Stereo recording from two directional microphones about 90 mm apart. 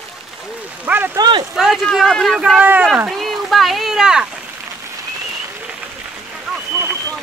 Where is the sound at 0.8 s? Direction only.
20° right (ahead or behind).